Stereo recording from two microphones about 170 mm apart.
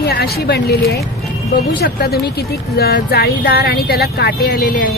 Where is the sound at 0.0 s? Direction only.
65° left (ahead or behind).